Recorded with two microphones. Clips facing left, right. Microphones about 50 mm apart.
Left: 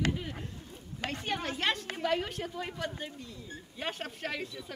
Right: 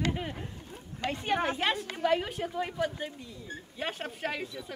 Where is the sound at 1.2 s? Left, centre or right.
Centre.